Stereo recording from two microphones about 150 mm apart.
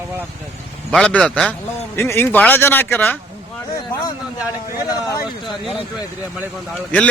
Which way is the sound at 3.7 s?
25° left (ahead or behind).